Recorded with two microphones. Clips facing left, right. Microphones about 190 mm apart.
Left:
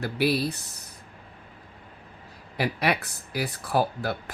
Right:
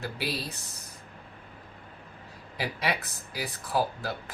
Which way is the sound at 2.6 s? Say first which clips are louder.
Left 5 dB; 65° left (ahead or behind).